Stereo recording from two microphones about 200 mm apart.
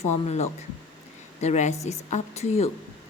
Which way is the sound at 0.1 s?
35° left (ahead or behind).